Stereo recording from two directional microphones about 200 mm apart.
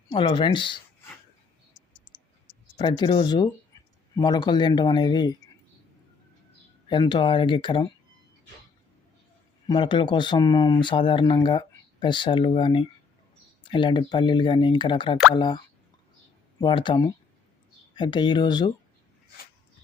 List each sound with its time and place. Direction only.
0.1 s speech: 25° left (ahead or behind)
2.7 s speech: 20° left (ahead or behind)
6.8 s speech: 25° left (ahead or behind)
9.6 s speech: 25° left (ahead or behind)